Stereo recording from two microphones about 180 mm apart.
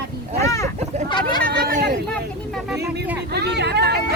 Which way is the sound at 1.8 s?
70° right (ahead or behind).